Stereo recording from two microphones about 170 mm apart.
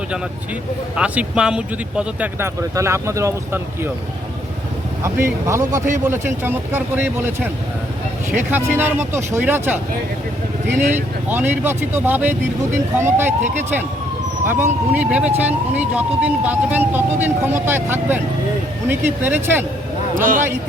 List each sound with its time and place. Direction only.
0.9 s speech: 5° right (ahead or behind)
5.0 s speech: 15° right (ahead or behind)
8.3 s speech: 10° right (ahead or behind)
11.3 s speech: 10° right (ahead or behind)
14.4 s speech: 15° right (ahead or behind)
20.1 s speech: 50° right (ahead or behind)